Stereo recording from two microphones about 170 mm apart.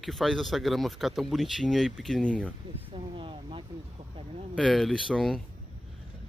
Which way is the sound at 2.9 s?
30° right (ahead or behind).